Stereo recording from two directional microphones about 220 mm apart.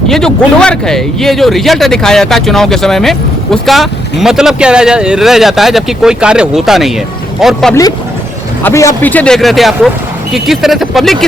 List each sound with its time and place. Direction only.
0.1 s speech: 5° left (ahead or behind)
8.6 s speech: 15° left (ahead or behind)